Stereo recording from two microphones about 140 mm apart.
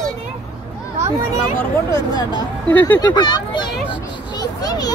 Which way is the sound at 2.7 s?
10° left (ahead or behind).